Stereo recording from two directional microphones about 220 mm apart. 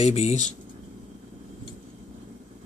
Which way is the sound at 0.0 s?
30° left (ahead or behind).